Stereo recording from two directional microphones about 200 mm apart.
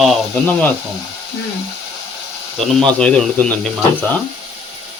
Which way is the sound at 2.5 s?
5° left (ahead or behind).